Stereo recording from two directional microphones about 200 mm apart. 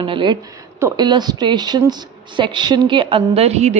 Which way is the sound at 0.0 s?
25° right (ahead or behind).